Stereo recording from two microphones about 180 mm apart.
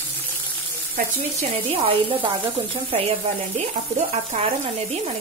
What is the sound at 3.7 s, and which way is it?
Stir, 50° right (ahead or behind).